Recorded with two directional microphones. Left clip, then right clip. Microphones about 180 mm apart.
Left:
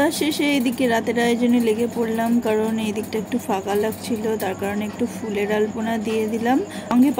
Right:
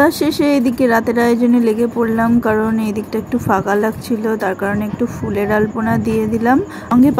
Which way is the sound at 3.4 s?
30° right (ahead or behind).